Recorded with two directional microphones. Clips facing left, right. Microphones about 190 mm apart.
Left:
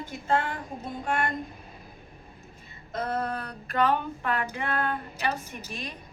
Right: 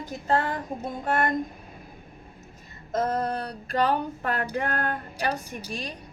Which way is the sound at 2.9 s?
40° right (ahead or behind).